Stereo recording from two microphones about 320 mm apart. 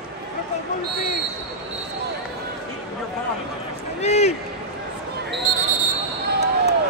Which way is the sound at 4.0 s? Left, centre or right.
Centre.